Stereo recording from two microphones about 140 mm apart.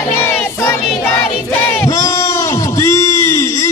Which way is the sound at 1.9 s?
25° left (ahead or behind).